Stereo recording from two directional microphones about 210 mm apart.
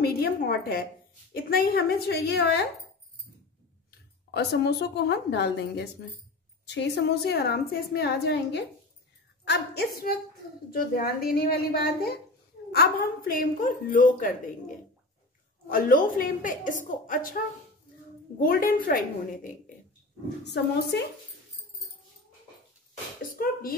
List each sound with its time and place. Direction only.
0.0 s a woman's voice: 45° left (ahead or behind)
4.3 s a woman's voice: 50° left (ahead or behind)
15.7 s a woman's voice: 40° left (ahead or behind)
18.4 s a woman's voice: 40° left (ahead or behind)
20.4 s a woman's voice: 55° left (ahead or behind)
23.3 s a woman's voice: 45° left (ahead or behind)